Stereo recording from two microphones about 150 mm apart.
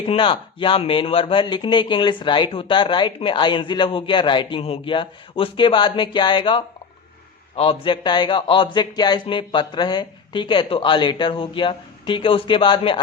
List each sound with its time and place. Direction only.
0.0 s speech: 40° left (ahead or behind)